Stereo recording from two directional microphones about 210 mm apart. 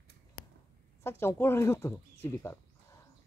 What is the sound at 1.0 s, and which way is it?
Speech, 10° left (ahead or behind).